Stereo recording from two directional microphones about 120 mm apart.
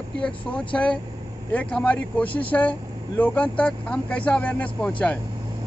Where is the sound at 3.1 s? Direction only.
10° left (ahead or behind).